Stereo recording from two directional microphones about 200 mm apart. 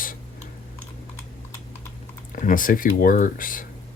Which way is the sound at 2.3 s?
40° left (ahead or behind).